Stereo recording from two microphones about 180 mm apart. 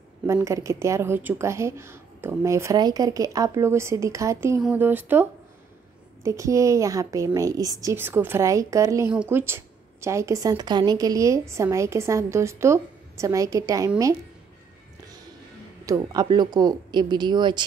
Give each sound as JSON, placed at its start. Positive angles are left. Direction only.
{"t": 0.3, "sound": "a woman's voice", "side_deg": -15}
{"t": 6.2, "sound": "a woman's voice", "side_deg": -15}
{"t": 15.8, "sound": "speech", "side_deg": -20}